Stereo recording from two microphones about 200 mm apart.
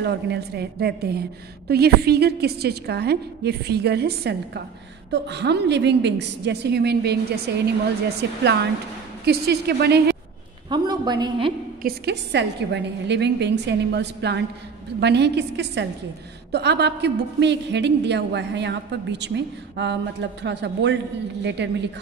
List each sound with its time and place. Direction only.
0.0 s a woman's voice: 55° right (ahead or behind)
10.7 s a woman's voice: 20° right (ahead or behind)
11.8 s a woman's voice: 55° right (ahead or behind)